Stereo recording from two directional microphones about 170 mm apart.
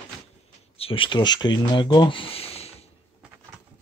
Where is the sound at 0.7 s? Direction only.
30° left (ahead or behind).